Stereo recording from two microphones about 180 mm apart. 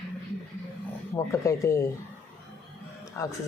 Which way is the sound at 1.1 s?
15° left (ahead or behind).